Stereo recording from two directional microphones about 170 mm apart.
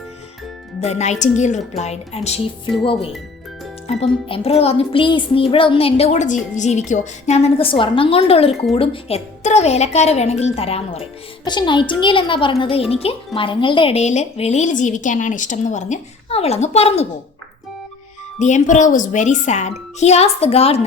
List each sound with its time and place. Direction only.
0.8 s speech: 40° left (ahead or behind)
3.8 s a woman's voice: 35° left (ahead or behind)
18.3 s a woman's voice: 45° left (ahead or behind)